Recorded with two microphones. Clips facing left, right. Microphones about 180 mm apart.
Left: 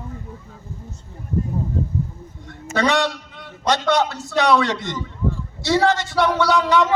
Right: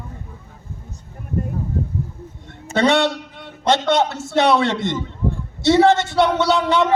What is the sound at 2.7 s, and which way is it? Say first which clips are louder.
A man's voice: right 3 dB; 25° right (ahead or behind).